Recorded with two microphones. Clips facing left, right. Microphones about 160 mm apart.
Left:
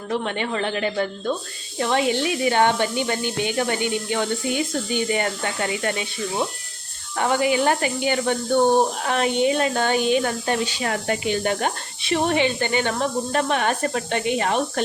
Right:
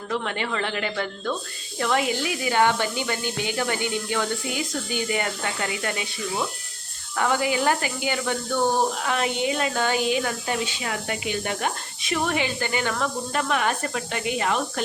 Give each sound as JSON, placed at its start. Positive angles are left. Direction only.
{"t": 0.1, "sound": "speech", "side_deg": 25}
{"t": 7.2, "sound": "speech", "side_deg": 25}